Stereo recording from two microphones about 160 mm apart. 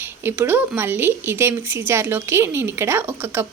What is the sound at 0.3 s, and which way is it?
Speech, 15° right (ahead or behind).